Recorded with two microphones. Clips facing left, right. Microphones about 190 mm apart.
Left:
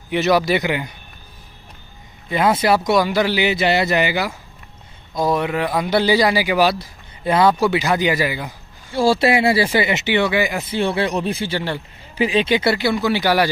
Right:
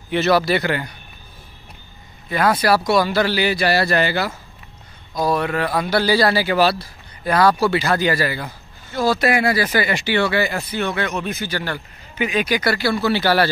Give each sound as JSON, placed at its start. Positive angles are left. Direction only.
{"t": 0.1, "sound": "speech", "side_deg": 15}
{"t": 2.2, "sound": "speech", "side_deg": 25}
{"t": 8.9, "sound": "speech", "side_deg": 30}
{"t": 10.7, "sound": "speech", "side_deg": 30}